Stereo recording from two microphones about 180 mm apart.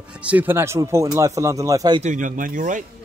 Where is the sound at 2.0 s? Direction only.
45° right (ahead or behind).